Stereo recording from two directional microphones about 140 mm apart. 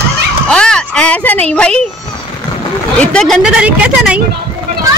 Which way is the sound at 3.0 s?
5° left (ahead or behind).